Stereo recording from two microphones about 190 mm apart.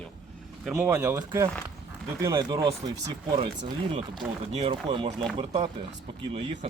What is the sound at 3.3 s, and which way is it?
Speech, 35° right (ahead or behind).